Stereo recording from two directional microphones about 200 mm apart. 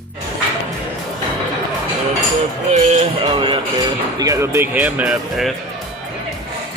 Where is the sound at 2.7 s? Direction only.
35° right (ahead or behind).